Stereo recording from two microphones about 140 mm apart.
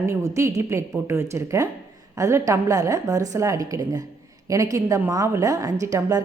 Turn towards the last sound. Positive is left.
turn(degrees=-25)  # may be behind; listen again after turning